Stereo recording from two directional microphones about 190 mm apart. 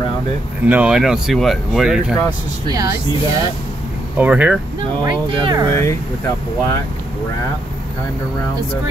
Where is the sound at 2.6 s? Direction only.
20° right (ahead or behind).